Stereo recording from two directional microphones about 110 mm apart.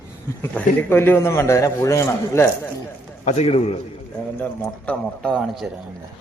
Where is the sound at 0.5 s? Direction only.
20° left (ahead or behind).